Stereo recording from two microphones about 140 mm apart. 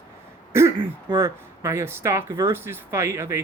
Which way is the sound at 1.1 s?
20° right (ahead or behind).